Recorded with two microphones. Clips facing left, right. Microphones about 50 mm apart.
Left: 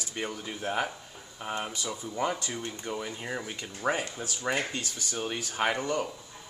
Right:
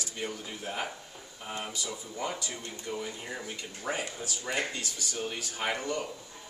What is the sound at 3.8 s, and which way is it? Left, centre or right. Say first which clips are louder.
Speech: left 4 dB; left.